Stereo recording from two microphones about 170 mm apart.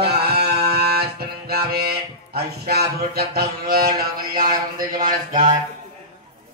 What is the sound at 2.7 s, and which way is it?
A man's voice, 65° right (ahead or behind).